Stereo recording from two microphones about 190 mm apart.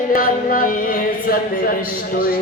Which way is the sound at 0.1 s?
45° left (ahead or behind).